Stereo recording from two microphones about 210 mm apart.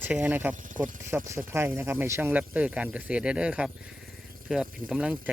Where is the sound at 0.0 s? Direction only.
10° right (ahead or behind).